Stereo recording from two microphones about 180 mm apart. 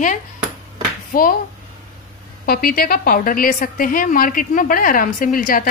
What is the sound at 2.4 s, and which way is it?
A woman's voice, 55° left (ahead or behind).